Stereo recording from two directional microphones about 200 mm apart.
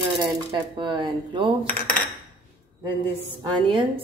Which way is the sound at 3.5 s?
25° right (ahead or behind).